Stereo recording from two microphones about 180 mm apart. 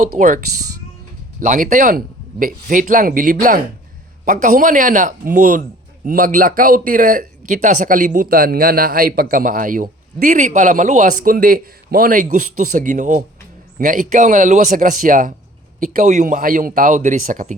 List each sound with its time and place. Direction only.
0.2 s speech: 40° right (ahead or behind)
1.4 s speech: 50° right (ahead or behind)